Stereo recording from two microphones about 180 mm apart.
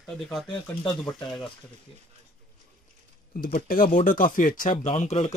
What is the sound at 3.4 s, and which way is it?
Speech, 50° left (ahead or behind).